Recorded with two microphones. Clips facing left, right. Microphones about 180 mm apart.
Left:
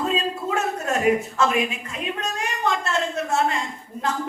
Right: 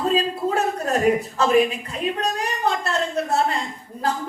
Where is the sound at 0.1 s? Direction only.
35° right (ahead or behind).